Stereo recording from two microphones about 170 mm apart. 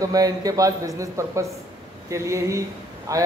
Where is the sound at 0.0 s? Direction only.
20° right (ahead or behind).